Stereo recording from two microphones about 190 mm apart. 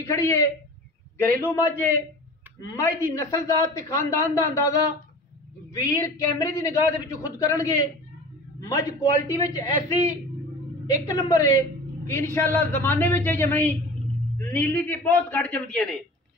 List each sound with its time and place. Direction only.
0.0 s speech: 15° left (ahead or behind)
5.9 s speech: 15° left (ahead or behind)